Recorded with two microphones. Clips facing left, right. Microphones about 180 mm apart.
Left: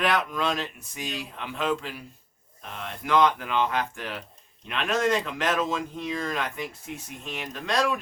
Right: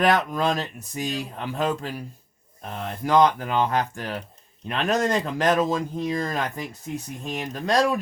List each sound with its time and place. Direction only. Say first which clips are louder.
0.0 s speech: right 5 dB; 40° right (ahead or behind)